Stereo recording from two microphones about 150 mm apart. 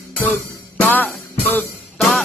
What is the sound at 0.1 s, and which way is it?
Music, 10° left (ahead or behind).